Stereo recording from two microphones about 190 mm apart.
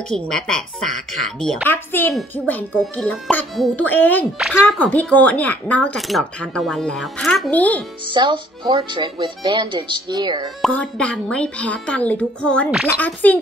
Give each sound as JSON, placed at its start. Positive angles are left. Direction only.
{"t": 0.1, "sound": "a woman's voice", "side_deg": 5}
{"t": 8.1, "sound": "speech", "side_deg": -25}
{"t": 10.6, "sound": "a woman's voice", "side_deg": 5}